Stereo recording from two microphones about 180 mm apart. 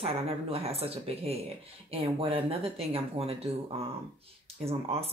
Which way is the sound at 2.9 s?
35° right (ahead or behind).